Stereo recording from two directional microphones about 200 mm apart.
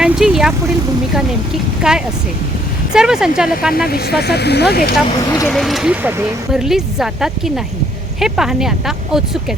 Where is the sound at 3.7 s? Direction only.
50° left (ahead or behind).